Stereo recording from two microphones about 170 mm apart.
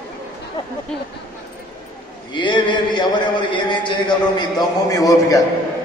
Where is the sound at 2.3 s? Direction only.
30° left (ahead or behind).